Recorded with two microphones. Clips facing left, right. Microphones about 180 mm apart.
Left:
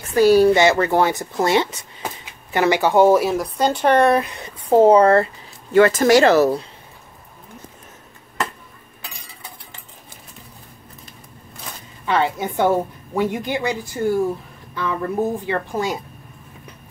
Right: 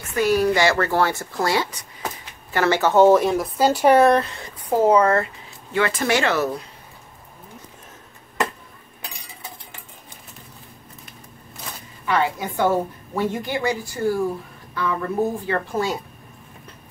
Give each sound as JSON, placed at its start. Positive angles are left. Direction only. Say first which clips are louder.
{"t": 0.1, "sound": "speech", "louder": "left 6 dB", "side_deg": 30}
{"t": 4.1, "sound": "speech", "louder": "even", "side_deg": 15}
{"t": 12.1, "sound": "a woman's voice", "louder": "left 2 dB", "side_deg": 20}